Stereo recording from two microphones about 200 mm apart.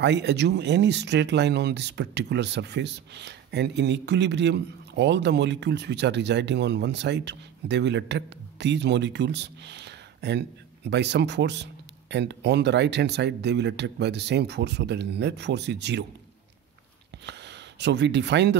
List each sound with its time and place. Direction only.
0.0 s speech: 60° right (ahead or behind)
17.3 s speech: 60° right (ahead or behind)